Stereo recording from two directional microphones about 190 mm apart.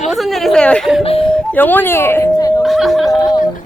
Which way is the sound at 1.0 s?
30° left (ahead or behind).